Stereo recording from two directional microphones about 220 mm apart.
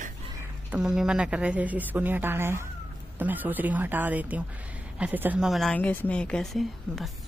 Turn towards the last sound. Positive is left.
turn(degrees=0)  # may be behind; listen again after turning